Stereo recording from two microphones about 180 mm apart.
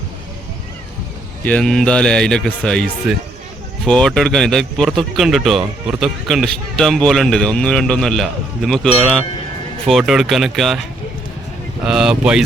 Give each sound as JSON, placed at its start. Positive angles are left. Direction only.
{"t": 1.5, "sound": "a man's voice", "side_deg": 5}
{"t": 11.9, "sound": "a man's voice", "side_deg": -5}